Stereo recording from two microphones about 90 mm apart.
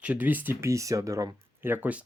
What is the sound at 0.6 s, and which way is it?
Speech, 35° right (ahead or behind).